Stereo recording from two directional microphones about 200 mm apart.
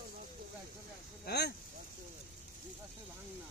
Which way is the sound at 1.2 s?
55° left (ahead or behind).